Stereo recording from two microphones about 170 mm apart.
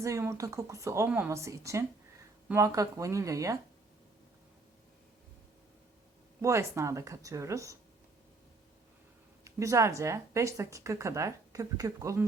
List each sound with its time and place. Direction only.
0.0 s a woman's voice: 15° right (ahead or behind)
6.4 s a woman's voice: 15° right (ahead or behind)
9.4 s a woman's voice: 20° right (ahead or behind)